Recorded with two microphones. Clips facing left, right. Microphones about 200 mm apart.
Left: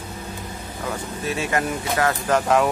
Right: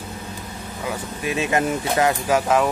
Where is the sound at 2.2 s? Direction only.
5° right (ahead or behind).